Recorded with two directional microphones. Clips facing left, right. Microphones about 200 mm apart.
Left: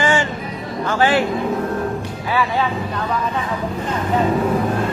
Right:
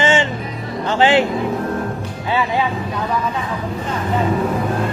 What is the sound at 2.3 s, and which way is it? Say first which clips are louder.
Speech: right 1 dB; 20° right (ahead or behind).